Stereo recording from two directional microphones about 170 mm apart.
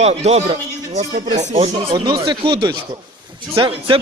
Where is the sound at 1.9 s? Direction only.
25° right (ahead or behind).